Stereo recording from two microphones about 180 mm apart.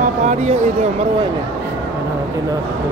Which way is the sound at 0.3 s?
40° right (ahead or behind).